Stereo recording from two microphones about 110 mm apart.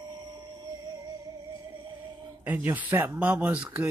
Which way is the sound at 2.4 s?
15° right (ahead or behind).